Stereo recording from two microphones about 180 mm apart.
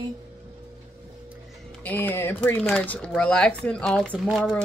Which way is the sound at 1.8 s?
10° left (ahead or behind).